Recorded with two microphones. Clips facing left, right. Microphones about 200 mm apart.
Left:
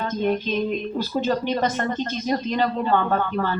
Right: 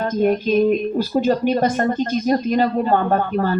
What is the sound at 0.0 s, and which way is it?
Speech, 45° right (ahead or behind).